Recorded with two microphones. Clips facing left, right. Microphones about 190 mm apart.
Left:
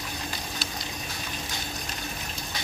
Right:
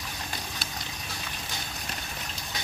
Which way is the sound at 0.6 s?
55° right (ahead or behind).